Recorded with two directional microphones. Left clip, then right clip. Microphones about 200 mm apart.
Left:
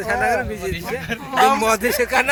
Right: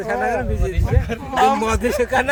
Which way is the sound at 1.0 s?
50° right (ahead or behind).